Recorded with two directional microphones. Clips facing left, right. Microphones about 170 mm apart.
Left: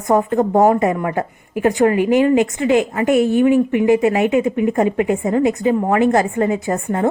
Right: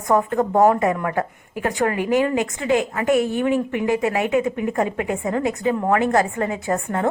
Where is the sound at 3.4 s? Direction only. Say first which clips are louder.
Left 7 dB; 10° left (ahead or behind).